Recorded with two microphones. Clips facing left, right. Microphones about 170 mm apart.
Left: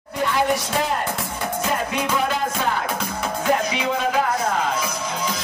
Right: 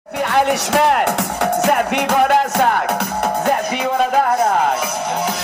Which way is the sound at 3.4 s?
55° right (ahead or behind).